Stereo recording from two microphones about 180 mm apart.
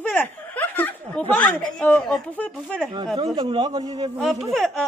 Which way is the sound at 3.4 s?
25° right (ahead or behind).